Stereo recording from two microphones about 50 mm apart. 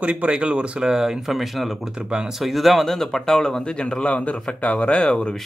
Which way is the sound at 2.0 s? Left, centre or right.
Centre.